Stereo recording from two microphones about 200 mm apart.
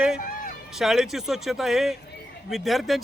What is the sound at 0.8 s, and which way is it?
Speech, centre (ahead or behind).